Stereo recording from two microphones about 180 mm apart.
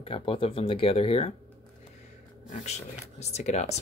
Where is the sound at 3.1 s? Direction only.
40° left (ahead or behind).